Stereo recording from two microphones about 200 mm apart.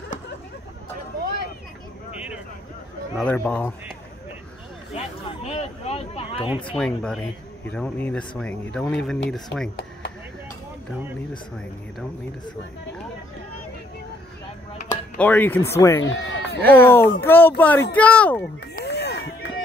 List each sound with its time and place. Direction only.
3.2 s speech: 5° left (ahead or behind)
4.9 s a sound: 30° left (ahead or behind)
6.6 s speech: 5° left (ahead or behind)
15.1 s speech: 10° left (ahead or behind)
16.0 s speech: 70° left (ahead or behind)
16.6 s speech: 10° left (ahead or behind)
18.8 s a sound: 55° left (ahead or behind)